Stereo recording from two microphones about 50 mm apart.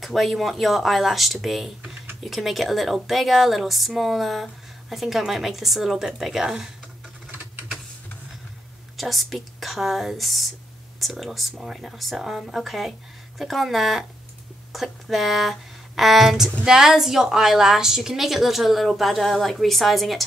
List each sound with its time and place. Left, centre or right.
0.0 s speech: centre
8.9 s speech: centre